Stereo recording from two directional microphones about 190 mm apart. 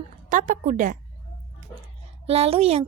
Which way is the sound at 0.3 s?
40° right (ahead or behind).